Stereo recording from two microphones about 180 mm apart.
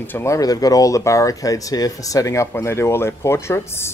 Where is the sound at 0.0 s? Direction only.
15° left (ahead or behind).